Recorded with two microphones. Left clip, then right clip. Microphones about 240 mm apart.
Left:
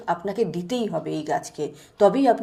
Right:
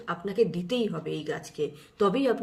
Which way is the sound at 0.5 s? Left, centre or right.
Centre.